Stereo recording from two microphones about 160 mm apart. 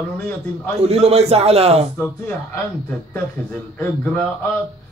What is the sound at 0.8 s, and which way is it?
A man's voice, 40° right (ahead or behind).